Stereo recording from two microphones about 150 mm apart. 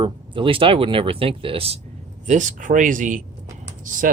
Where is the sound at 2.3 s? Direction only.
60° right (ahead or behind).